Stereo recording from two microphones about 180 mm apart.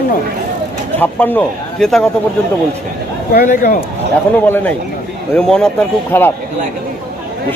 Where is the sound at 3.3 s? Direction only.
55° left (ahead or behind).